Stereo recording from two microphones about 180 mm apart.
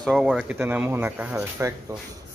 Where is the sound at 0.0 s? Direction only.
Centre (ahead or behind).